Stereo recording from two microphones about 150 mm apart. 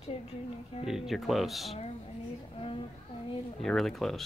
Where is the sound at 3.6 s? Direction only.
Centre (ahead or behind).